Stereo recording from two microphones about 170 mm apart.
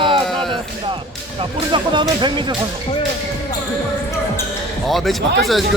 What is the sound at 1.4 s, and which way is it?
Speech, 30° right (ahead or behind).